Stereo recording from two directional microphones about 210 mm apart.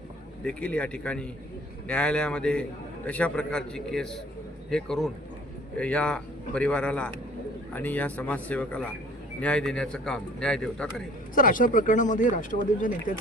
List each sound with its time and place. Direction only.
0.4 s a man's voice: 5° left (ahead or behind)
11.3 s speech: 40° left (ahead or behind)